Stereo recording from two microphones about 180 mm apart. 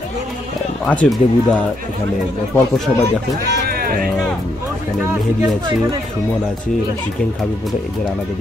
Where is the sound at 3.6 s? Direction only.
55° right (ahead or behind).